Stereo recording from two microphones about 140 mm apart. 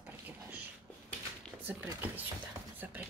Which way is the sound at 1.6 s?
15° right (ahead or behind).